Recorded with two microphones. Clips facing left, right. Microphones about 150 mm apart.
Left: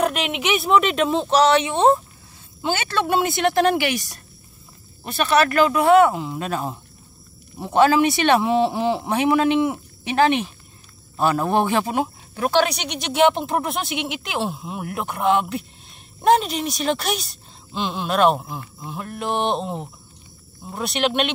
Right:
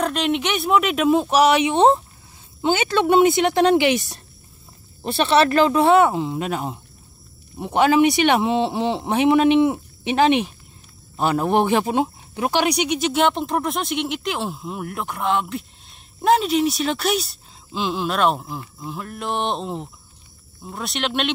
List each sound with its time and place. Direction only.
0.0 s speech: 5° left (ahead or behind)